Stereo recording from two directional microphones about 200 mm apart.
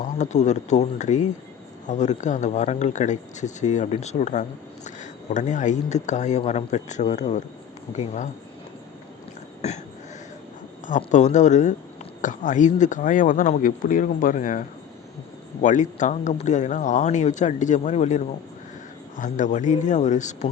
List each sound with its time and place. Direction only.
0.0 s speech: 35° left (ahead or behind)
9.6 s throat clearing: 35° left (ahead or behind)
10.8 s speech: 40° left (ahead or behind)
15.6 s speech: 40° left (ahead or behind)